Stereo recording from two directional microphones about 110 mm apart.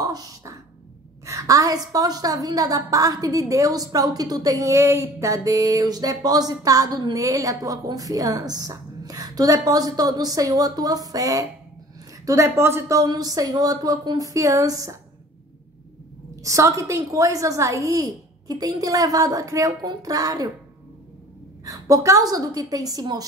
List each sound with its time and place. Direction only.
0.0 s a sound: 35° right (ahead or behind)
1.2 s a woman's voice: 30° right (ahead or behind)
16.4 s a woman's voice: 30° right (ahead or behind)
21.6 s a woman's voice: 30° right (ahead or behind)